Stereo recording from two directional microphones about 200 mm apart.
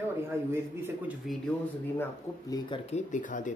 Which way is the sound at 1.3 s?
10° left (ahead or behind).